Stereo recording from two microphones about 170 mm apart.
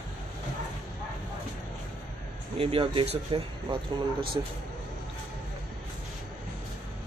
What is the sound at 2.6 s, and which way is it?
Speech, 30° right (ahead or behind).